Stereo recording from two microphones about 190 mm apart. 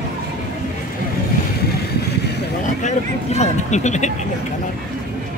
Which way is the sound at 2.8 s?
35° left (ahead or behind).